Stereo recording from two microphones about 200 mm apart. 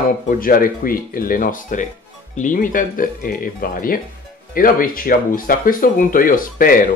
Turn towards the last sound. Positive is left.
turn(degrees=45)  # may be behind; listen again after turning